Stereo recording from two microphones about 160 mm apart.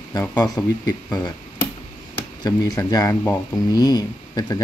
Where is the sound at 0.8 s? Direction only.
25° left (ahead or behind).